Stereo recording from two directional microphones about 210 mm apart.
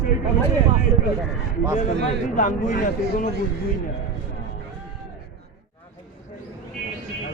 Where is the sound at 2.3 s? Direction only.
40° left (ahead or behind).